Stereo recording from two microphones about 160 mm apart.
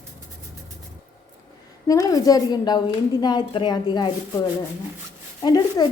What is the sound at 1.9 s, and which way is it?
A woman's voice, 20° left (ahead or behind).